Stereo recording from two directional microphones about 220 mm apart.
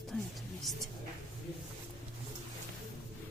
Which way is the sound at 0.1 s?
Centre (ahead or behind).